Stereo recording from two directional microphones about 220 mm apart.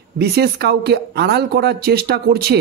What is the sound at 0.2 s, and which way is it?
Speech, 50° right (ahead or behind).